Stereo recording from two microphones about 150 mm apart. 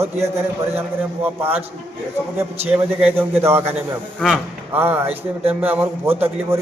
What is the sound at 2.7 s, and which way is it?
A man's voice, 10° right (ahead or behind).